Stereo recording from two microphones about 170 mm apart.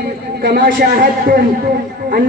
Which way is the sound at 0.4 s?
70° right (ahead or behind).